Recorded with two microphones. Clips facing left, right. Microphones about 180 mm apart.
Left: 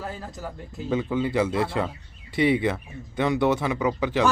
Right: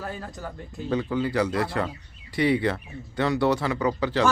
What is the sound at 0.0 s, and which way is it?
Speech, centre (ahead or behind).